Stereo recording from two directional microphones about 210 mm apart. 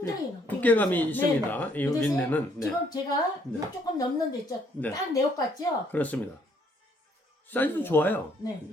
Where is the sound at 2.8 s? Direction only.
20° left (ahead or behind).